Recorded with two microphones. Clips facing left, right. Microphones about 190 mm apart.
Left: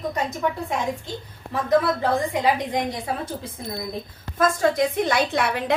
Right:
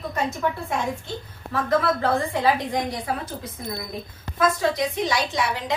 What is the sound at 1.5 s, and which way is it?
A woman's voice, 15° left (ahead or behind).